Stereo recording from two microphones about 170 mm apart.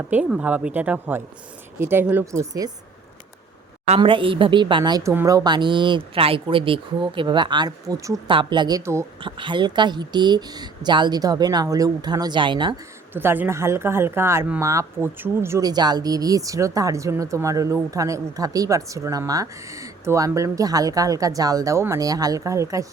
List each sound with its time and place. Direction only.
0.1 s speech: 5° right (ahead or behind)
3.8 s speech: 35° right (ahead or behind); by 9.0 s 15° right (ahead or behind)
9.2 s speech: 30° right (ahead or behind)
13.1 s speech: 10° right (ahead or behind)